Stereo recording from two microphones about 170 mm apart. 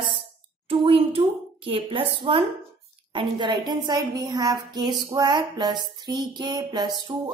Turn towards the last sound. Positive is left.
turn(degrees=-25)  # may be behind; listen again after turning